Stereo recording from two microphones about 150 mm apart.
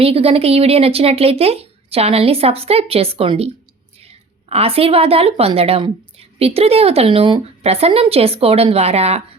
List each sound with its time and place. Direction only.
0.0 s a woman's voice: 40° right (ahead or behind)